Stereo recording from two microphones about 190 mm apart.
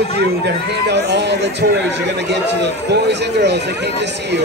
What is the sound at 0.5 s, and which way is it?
Speech, 65° right (ahead or behind).